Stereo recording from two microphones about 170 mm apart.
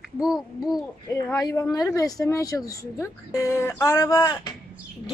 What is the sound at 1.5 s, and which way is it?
Speech, 20° left (ahead or behind).